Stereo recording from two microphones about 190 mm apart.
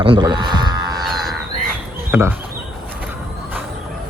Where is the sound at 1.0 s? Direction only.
Centre (ahead or behind).